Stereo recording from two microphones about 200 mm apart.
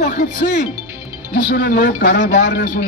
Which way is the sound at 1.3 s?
50° left (ahead or behind).